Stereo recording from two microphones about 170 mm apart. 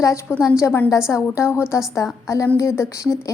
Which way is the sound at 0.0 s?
15° left (ahead or behind).